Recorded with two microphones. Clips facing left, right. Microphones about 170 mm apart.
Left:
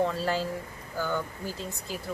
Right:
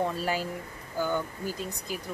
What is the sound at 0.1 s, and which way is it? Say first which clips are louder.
Speech: left 1 dB; 15° right (ahead or behind).